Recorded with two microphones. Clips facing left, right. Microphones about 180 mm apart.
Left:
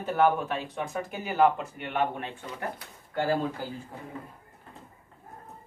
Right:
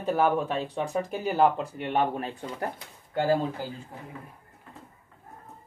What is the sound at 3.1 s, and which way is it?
Speech, 15° right (ahead or behind).